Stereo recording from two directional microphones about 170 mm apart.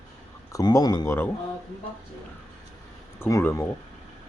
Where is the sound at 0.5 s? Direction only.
20° left (ahead or behind).